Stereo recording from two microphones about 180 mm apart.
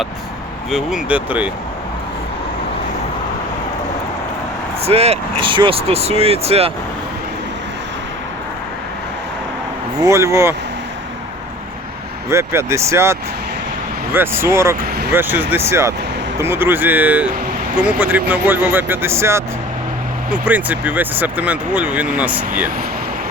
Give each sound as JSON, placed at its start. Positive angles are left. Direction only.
{"t": 0.7, "sound": "speech", "side_deg": 0}
{"t": 4.8, "sound": "speech", "side_deg": -35}
{"t": 10.0, "sound": "speech", "side_deg": -15}
{"t": 12.3, "sound": "speech", "side_deg": -15}